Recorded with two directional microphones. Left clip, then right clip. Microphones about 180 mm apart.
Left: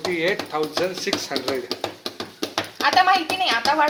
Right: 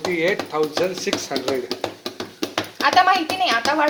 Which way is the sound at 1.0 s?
5° right (ahead or behind).